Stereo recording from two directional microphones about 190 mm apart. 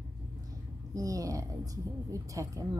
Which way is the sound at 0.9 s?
20° right (ahead or behind).